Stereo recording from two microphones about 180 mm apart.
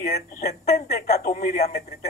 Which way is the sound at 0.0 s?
40° left (ahead or behind).